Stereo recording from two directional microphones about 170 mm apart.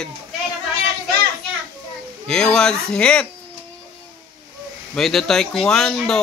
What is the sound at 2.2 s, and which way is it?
Speech, 5° left (ahead or behind).